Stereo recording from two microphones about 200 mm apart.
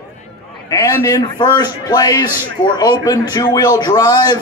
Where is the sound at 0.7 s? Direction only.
15° left (ahead or behind).